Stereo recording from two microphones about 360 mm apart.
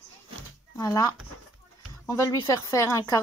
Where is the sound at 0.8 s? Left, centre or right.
Centre.